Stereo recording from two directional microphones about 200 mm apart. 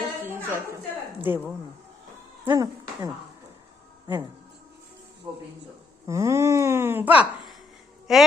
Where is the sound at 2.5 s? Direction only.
20° right (ahead or behind).